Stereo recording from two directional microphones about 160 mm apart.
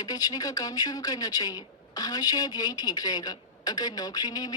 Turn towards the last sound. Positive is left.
turn(degrees=25)  # may be behind; listen again after turning